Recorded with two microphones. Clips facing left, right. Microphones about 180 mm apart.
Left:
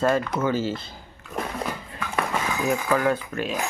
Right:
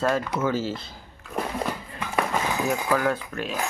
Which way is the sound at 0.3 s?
5° right (ahead or behind).